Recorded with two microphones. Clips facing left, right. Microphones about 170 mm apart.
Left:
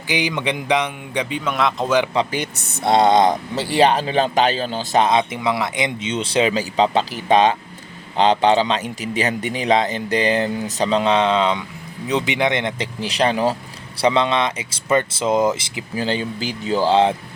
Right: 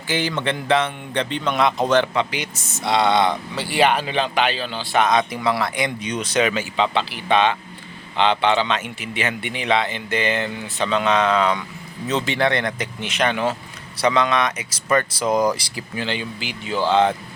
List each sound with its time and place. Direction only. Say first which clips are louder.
0.1 s a man's voice: left 1 dB; 15° left (ahead or behind)
2.3 s a man's voice: left 4 dB; 55° left (ahead or behind)
5.0 s a man's voice: left 1 dB; 25° left (ahead or behind)
13.0 s speech: left 3 dB; 35° left (ahead or behind)
16.0 s a man's voice: left 5 dB; 40° left (ahead or behind)